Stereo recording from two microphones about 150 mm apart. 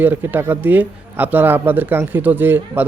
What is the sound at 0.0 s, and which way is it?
A man's voice, 10° right (ahead or behind).